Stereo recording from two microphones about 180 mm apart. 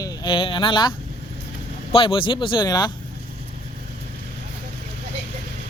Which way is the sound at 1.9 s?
30° left (ahead or behind).